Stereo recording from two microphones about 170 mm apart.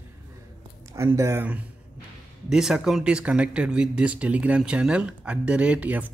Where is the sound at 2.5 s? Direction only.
5° right (ahead or behind).